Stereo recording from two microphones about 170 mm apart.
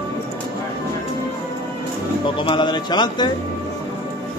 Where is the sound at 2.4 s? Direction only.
30° left (ahead or behind).